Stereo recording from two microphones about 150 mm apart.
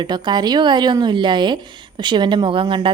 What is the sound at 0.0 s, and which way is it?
Speech, 30° right (ahead or behind).